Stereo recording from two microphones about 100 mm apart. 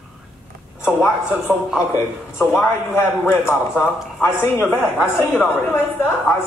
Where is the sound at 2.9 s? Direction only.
25° left (ahead or behind).